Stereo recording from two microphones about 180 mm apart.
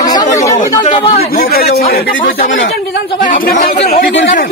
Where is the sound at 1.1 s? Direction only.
60° left (ahead or behind).